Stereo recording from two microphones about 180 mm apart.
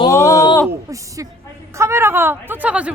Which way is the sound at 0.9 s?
20° right (ahead or behind).